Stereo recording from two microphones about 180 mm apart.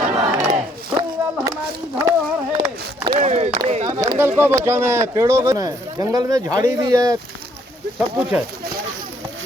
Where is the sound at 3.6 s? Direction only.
40° right (ahead or behind).